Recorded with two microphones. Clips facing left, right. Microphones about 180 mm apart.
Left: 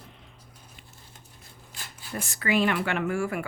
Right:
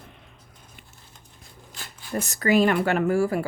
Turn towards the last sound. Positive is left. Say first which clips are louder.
# right 6 dB
turn(degrees=-35)  # may be behind; listen again after turning